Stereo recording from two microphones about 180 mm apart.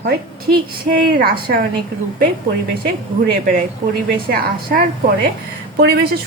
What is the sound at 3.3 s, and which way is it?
A woman's voice, 50° right (ahead or behind).